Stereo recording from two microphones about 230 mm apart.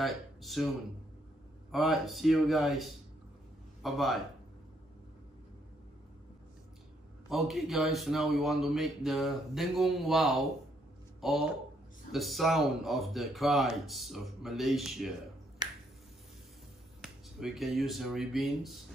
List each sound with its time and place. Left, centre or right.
0.0 s a man's voice: centre
1.7 s a man's voice: centre
7.2 s a man's voice: centre
15.6 s finger snapping: centre
17.0 s speech: centre